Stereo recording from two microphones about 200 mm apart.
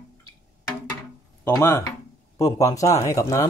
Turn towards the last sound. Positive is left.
turn(degrees=15)  # may be behind; listen again after turning